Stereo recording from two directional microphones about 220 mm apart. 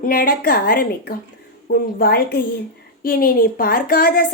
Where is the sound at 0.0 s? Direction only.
40° left (ahead or behind).